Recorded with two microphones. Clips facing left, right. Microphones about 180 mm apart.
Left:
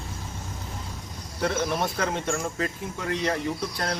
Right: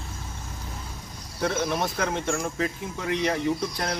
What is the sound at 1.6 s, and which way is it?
Speech, 5° left (ahead or behind).